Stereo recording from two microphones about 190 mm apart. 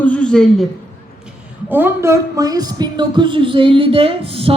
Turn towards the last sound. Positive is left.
turn(degrees=-30)  # may be behind; listen again after turning